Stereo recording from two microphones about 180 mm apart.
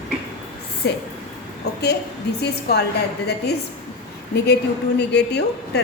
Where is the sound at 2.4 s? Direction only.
65° left (ahead or behind).